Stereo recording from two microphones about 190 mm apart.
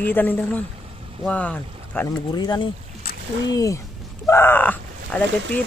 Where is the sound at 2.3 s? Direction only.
20° left (ahead or behind).